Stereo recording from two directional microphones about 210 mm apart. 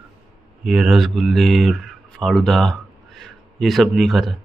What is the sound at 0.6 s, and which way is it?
Speech, 5° right (ahead or behind).